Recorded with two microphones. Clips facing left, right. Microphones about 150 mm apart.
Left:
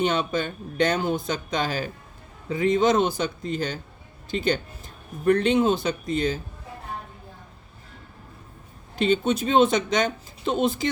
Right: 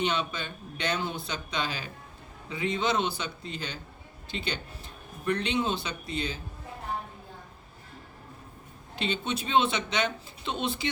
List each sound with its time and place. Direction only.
0.0 s speech: 45° left (ahead or behind)
9.0 s speech: 45° left (ahead or behind)